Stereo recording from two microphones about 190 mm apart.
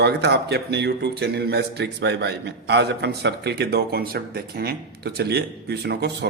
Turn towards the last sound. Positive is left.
turn(degrees=-60)  # may be behind; listen again after turning